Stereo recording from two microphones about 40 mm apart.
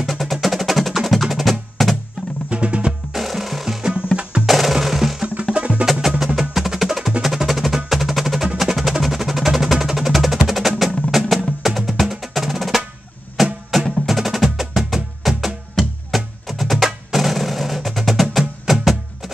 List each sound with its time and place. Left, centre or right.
0.0 s percussion: centre
2.5 s music: right
3.1 s music: centre
3.8 s music: right
4.5 s percussion: centre
5.3 s music: right
6.0 s music: centre
11.6 s percussion: centre
13.7 s music: centre
14.0 s percussion: centre
15.2 s music: centre
16.1 s percussion: centre
18.7 s music: centre